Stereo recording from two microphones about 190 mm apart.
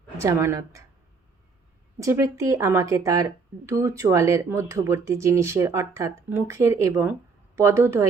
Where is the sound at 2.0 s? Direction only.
15° right (ahead or behind).